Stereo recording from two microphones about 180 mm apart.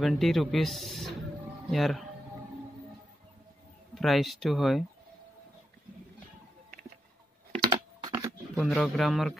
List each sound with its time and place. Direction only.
0.0 s a man's voice: centre (ahead or behind)
3.9 s a man's voice: centre (ahead or behind)
7.6 s typing: 20° right (ahead or behind)
8.5 s a man's voice: centre (ahead or behind)